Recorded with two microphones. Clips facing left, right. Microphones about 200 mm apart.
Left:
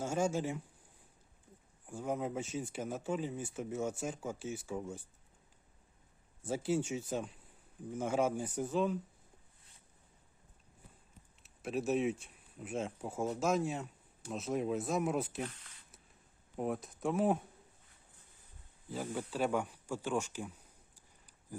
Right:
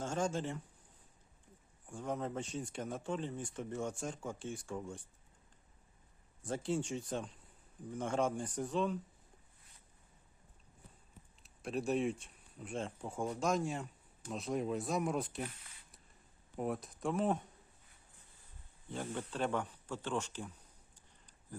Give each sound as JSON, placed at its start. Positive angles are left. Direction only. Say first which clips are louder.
{"t": 0.0, "sound": "speech", "louder": "left 3 dB", "side_deg": 10}
{"t": 1.9, "sound": "speech", "louder": "left 2 dB", "side_deg": 5}
{"t": 6.4, "sound": "speech", "louder": "left 3 dB", "side_deg": 5}
{"t": 11.4, "sound": "speech", "louder": "left 2 dB", "side_deg": 5}
{"t": 16.6, "sound": "speech", "louder": "left 1 dB", "side_deg": 0}
{"t": 18.9, "sound": "speech", "louder": "left 2 dB", "side_deg": 5}